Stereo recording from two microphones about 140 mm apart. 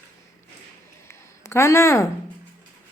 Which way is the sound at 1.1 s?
20° left (ahead or behind).